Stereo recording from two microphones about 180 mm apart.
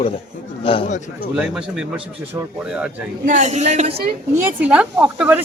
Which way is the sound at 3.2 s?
45° right (ahead or behind).